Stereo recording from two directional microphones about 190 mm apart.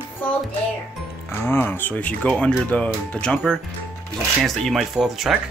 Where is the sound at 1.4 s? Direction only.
10° left (ahead or behind).